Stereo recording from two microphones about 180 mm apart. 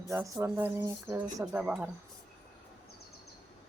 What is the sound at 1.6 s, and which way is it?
Speech, 5° right (ahead or behind).